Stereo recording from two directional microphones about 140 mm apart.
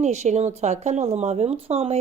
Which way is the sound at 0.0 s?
55° right (ahead or behind).